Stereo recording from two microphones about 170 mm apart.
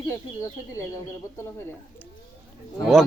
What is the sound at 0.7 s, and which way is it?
Speech, 20° left (ahead or behind).